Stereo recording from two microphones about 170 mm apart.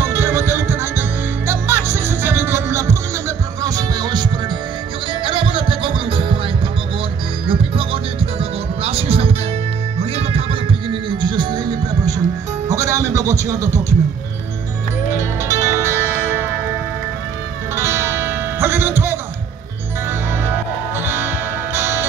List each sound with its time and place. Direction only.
0.0 s music: 15° right (ahead or behind); by 6.3 s 30° right (ahead or behind)
7.4 s music: 30° right (ahead or behind); by 13.9 s 15° right (ahead or behind)
15.1 s music: 15° right (ahead or behind)
17.7 s music: 15° right (ahead or behind)
21.0 s music: 15° right (ahead or behind)